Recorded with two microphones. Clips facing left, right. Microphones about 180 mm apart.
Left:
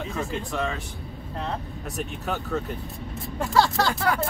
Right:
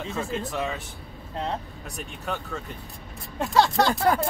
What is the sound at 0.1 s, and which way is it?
Speech, 5° right (ahead or behind).